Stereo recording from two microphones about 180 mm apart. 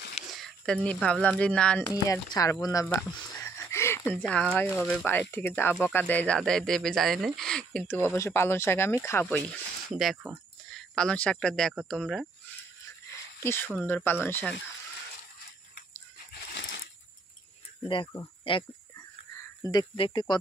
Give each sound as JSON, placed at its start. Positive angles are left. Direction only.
{"t": 0.1, "sound": "speech", "side_deg": 0}
{"t": 1.9, "sound": "speech", "side_deg": 20}
{"t": 9.8, "sound": "speech", "side_deg": 0}
{"t": 13.4, "sound": "speech", "side_deg": 15}
{"t": 17.8, "sound": "speech", "side_deg": 25}
{"t": 19.7, "sound": "speech", "side_deg": 25}